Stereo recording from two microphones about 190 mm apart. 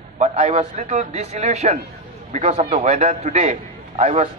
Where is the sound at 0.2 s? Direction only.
35° right (ahead or behind).